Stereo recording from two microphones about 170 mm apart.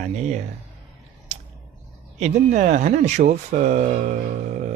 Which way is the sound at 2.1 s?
45° right (ahead or behind).